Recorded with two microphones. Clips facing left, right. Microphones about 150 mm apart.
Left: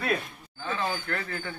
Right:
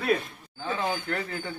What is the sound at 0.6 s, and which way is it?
Speech, 20° right (ahead or behind).